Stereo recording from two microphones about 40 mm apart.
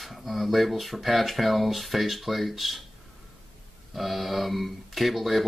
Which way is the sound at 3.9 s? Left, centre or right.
Centre.